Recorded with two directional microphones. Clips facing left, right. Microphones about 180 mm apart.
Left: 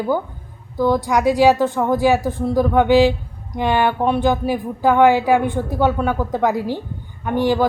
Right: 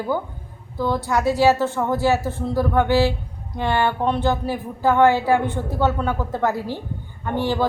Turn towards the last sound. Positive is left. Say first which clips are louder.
# left 4 dB
turn(degrees=15)  # may be behind; listen again after turning